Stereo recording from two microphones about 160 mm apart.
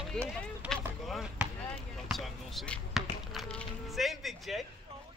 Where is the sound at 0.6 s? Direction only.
5° right (ahead or behind).